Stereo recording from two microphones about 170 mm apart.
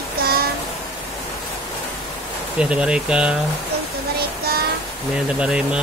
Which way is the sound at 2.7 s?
5° right (ahead or behind).